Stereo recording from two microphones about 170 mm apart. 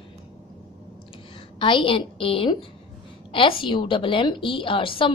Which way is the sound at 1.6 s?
30° left (ahead or behind).